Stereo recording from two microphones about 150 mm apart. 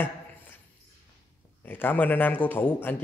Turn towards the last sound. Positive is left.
turn(degrees=15)  # may be behind; listen again after turning